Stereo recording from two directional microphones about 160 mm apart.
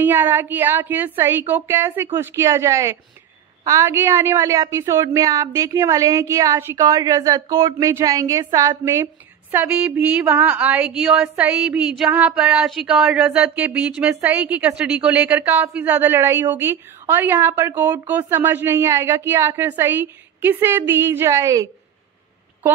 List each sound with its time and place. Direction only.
0.0 s a woman's voice: 15° right (ahead or behind)